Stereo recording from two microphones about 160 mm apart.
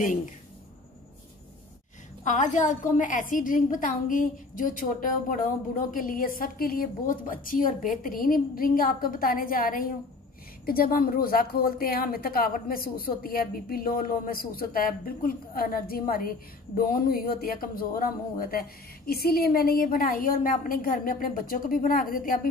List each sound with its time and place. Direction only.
2.2 s a woman's voice: 50° left (ahead or behind)